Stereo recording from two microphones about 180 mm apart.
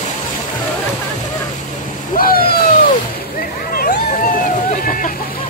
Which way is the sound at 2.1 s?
55° left (ahead or behind).